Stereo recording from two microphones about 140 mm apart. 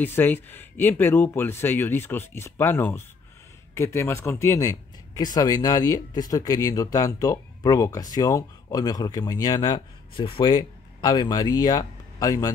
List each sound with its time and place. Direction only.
0.0 s speech: 15° left (ahead or behind)